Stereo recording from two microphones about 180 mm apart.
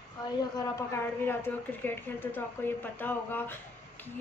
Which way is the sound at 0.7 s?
15° left (ahead or behind).